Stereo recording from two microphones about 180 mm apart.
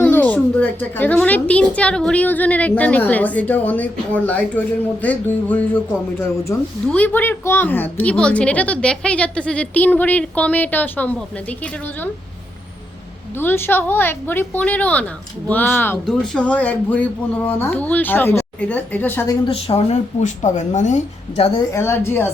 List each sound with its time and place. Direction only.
0.0 s a child's voice: 10° left (ahead or behind)
13.3 s a child's voice: 10° left (ahead or behind)
19.5 s speech: 35° left (ahead or behind)
21.7 s a child's voice: 15° left (ahead or behind)